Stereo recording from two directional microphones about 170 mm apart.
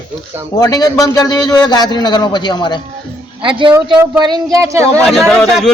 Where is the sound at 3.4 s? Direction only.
30° right (ahead or behind).